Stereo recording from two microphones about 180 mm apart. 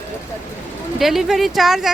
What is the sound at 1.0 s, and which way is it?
Speech, centre (ahead or behind).